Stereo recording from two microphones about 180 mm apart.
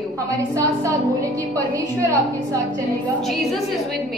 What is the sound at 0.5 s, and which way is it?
A woman's voice, 15° right (ahead or behind).